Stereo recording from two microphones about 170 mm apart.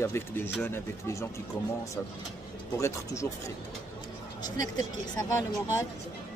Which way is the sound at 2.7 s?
20° left (ahead or behind).